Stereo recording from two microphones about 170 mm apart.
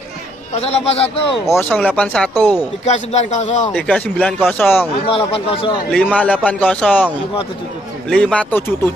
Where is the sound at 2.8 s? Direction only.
45° left (ahead or behind).